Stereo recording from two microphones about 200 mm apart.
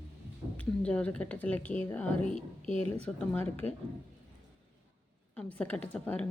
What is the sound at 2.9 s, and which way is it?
Speech, 5° left (ahead or behind).